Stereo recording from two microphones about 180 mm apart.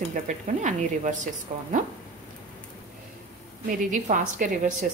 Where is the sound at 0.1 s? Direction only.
45° right (ahead or behind).